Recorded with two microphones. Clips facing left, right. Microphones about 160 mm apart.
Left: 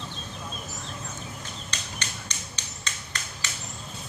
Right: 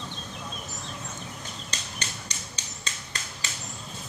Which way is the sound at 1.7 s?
35° right (ahead or behind).